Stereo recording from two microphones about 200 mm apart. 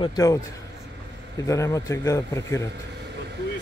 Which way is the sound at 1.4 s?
15° left (ahead or behind).